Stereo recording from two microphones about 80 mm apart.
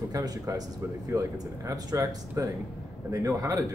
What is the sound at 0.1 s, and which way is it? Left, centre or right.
Speech, right.